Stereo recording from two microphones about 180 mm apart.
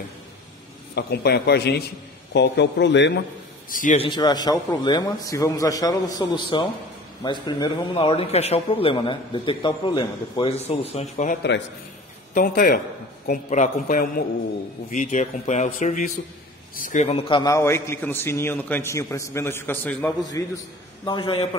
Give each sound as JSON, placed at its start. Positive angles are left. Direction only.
{"t": 0.9, "sound": "a man's voice", "side_deg": 65}
{"t": 3.7, "sound": "a man's voice", "side_deg": 45}
{"t": 4.0, "sound": "a man's voice", "side_deg": 25}
{"t": 12.4, "sound": "a man's voice", "side_deg": 50}